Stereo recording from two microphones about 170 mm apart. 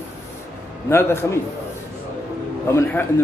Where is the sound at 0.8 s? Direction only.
15° left (ahead or behind).